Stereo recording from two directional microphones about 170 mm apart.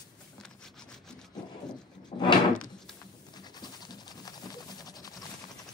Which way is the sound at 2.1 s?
45° left (ahead or behind).